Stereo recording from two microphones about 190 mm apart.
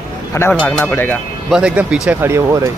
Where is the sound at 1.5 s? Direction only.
5° right (ahead or behind).